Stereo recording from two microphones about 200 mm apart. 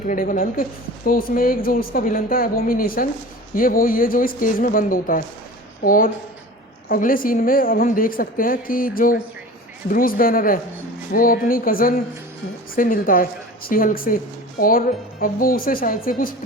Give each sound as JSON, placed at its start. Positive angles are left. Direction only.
{"t": 0.1, "sound": "a woman's voice", "side_deg": 40}